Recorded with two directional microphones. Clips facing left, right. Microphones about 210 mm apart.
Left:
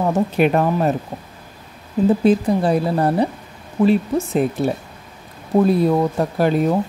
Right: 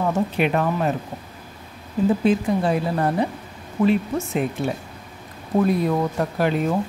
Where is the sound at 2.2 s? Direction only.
35° left (ahead or behind).